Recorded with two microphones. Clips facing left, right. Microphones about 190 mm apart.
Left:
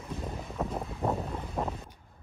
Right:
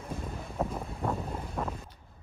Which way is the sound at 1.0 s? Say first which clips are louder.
Left 2 dB; 20° left (ahead or behind).